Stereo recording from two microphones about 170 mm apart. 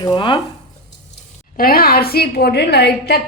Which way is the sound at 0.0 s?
25° left (ahead or behind).